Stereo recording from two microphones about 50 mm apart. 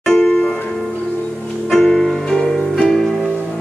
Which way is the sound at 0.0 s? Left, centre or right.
Centre.